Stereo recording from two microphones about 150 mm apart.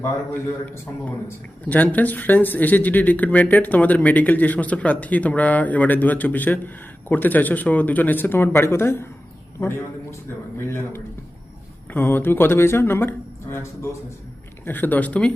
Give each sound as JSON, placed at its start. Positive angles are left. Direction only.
{"t": 1.6, "sound": "speech", "side_deg": 10}